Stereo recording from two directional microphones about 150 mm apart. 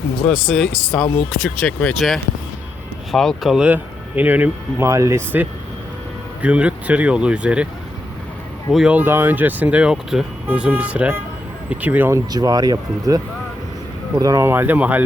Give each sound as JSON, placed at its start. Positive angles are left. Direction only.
{"t": 0.4, "sound": "speech", "side_deg": 0}
{"t": 8.7, "sound": "speech", "side_deg": -5}
{"t": 12.3, "sound": "speech", "side_deg": -25}